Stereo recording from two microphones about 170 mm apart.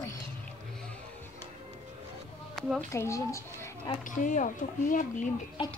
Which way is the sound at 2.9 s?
15° left (ahead or behind).